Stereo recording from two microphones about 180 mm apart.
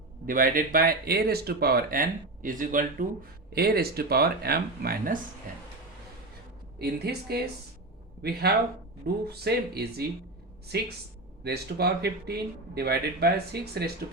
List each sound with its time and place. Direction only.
0.3 s speech: 50° right (ahead or behind)
3.5 s speech: 60° right (ahead or behind)
6.7 s speech: 65° right (ahead or behind)
11.4 s speech: 65° right (ahead or behind)